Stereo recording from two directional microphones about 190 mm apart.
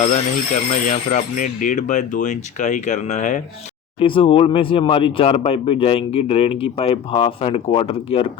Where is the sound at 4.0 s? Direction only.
30° left (ahead or behind).